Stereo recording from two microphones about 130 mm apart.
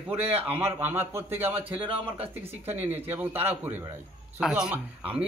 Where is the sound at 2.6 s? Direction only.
15° right (ahead or behind).